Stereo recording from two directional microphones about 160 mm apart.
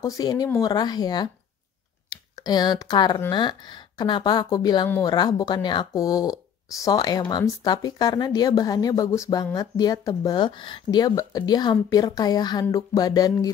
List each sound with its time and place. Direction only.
0.0 s speech: 25° left (ahead or behind)
2.3 s speech: 25° left (ahead or behind)